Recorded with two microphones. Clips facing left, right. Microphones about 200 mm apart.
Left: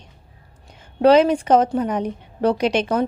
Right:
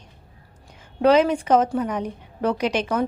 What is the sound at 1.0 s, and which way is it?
A woman's voice, 35° left (ahead or behind).